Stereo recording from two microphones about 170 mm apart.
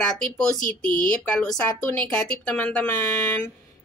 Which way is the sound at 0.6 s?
55° left (ahead or behind).